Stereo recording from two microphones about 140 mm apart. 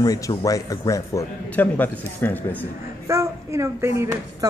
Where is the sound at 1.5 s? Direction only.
10° left (ahead or behind).